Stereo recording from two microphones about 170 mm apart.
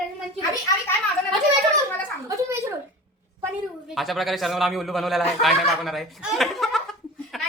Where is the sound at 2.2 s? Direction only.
15° right (ahead or behind).